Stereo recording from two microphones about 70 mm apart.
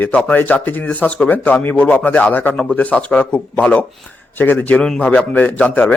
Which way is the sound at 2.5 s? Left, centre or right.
Centre.